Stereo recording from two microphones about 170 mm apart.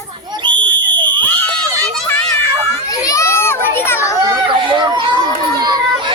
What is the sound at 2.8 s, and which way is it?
Children playing, 20° left (ahead or behind).